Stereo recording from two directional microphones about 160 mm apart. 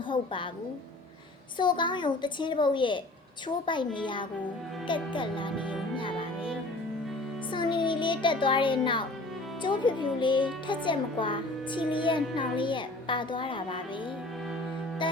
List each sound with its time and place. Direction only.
0.1 s a woman's voice: 30° left (ahead or behind)
1.5 s a child's voice: 30° left (ahead or behind)
6.0 s music: 30° left (ahead or behind)
7.5 s a child's voice: 30° left (ahead or behind)
15.0 s music: 30° left (ahead or behind)